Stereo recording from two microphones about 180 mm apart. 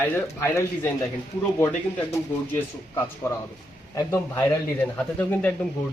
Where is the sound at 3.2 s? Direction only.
15° left (ahead or behind).